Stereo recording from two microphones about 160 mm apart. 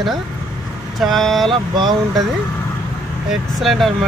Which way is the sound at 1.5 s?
25° right (ahead or behind).